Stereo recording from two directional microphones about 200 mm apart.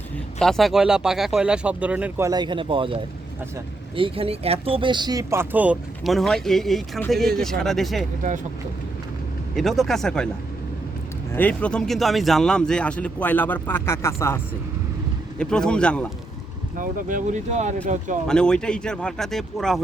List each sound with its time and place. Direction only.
0.3 s speech: centre (ahead or behind)
9.6 s speech: centre (ahead or behind)
11.3 s speech: 10° left (ahead or behind)
16.7 s speech: 40° right (ahead or behind)
18.3 s speech: 5° left (ahead or behind)